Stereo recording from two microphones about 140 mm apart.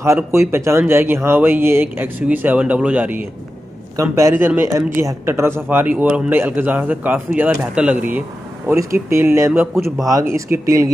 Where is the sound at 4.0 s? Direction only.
25° right (ahead or behind).